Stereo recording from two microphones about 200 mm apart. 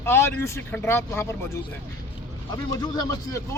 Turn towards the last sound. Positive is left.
turn(degrees=20)  # may be behind; listen again after turning